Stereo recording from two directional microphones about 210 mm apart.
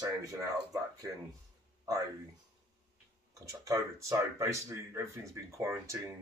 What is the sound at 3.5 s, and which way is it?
Speech, 15° right (ahead or behind).